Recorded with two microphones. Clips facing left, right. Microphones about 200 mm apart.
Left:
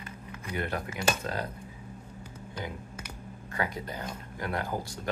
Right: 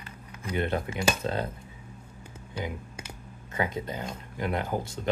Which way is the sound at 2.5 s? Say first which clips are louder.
Right 4 dB; 10° right (ahead or behind).